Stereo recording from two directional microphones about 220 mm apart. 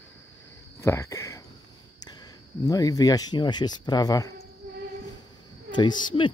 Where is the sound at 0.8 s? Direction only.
15° left (ahead or behind).